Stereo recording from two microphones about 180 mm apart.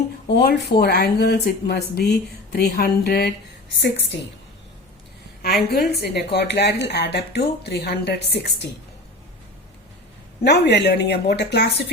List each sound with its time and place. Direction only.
0.3 s a woman's voice: 65° left (ahead or behind)
3.8 s a woman's voice: 80° left
5.4 s a woman's voice: 65° left (ahead or behind)
10.4 s a woman's voice: 65° left (ahead or behind)